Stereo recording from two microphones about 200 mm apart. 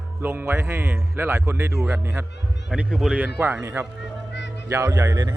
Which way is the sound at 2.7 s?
Centre (ahead or behind).